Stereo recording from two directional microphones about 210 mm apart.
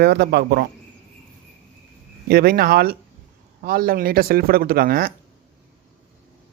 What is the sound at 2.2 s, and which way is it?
Speech, 45° right (ahead or behind).